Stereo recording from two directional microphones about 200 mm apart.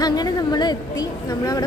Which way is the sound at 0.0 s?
20° left (ahead or behind).